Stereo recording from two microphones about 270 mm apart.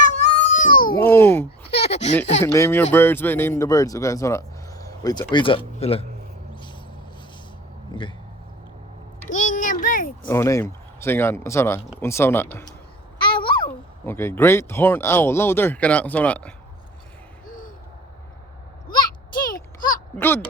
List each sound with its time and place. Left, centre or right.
0.0 s baby cry: left
0.9 s speech: centre
1.5 s a sound: left
2.4 s speech: centre
9.3 s a sound: left
10.2 s a child's voice: centre
17.4 s hoot: left
18.9 s a sound: centre
20.1 s speech: centre